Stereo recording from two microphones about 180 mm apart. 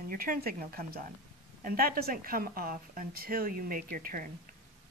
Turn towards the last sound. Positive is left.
turn(degrees=-50)  # may be behind; listen again after turning